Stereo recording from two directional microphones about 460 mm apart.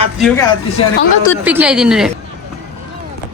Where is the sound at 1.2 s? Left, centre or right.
Centre.